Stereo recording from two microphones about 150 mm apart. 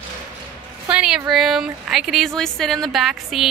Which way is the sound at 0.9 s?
5° right (ahead or behind).